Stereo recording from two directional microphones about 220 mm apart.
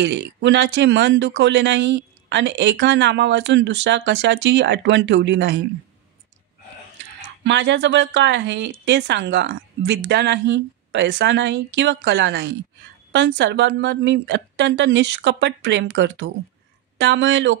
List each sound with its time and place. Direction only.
0.0 s speech: 55° right (ahead or behind)
7.4 s speech: 55° right (ahead or behind)